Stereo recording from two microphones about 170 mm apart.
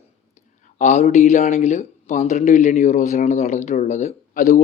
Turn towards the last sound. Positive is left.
turn(degrees=50)  # may be behind; listen again after turning